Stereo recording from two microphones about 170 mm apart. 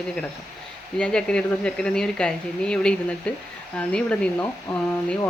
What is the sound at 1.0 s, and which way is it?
Speech, 5° left (ahead or behind).